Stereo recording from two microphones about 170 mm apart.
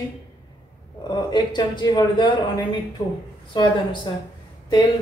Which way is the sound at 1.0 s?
25° left (ahead or behind).